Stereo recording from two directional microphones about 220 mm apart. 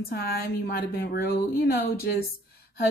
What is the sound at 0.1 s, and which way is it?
A woman's voice, 45° left (ahead or behind).